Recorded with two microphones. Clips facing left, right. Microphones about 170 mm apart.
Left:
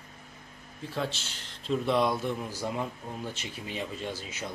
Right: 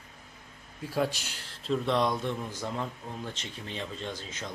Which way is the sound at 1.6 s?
5° left (ahead or behind).